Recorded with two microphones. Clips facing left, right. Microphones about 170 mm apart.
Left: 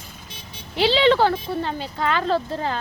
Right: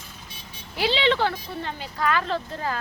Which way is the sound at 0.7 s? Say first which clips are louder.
Left 5 dB; 30° left (ahead or behind).